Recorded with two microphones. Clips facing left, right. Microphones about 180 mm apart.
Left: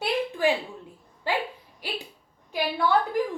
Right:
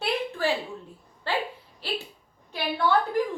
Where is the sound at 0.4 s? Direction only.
15° left (ahead or behind).